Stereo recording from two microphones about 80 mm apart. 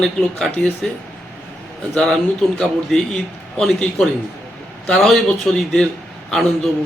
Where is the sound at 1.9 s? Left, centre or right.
Centre.